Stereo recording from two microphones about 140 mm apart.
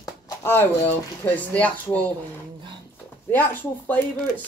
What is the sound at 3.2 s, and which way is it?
Speech, 15° left (ahead or behind).